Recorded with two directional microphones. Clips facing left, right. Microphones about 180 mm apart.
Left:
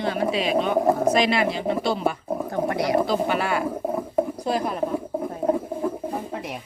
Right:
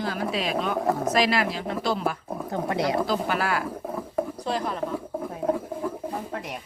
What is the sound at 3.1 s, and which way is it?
Speech, centre (ahead or behind).